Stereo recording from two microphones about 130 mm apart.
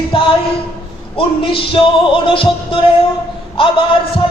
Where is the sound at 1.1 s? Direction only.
40° left (ahead or behind).